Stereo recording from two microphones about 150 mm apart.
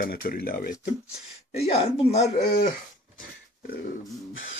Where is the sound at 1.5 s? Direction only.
45° left (ahead or behind).